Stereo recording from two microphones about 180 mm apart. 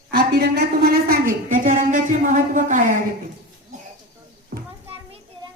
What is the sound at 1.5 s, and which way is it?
Speech, 50° right (ahead or behind).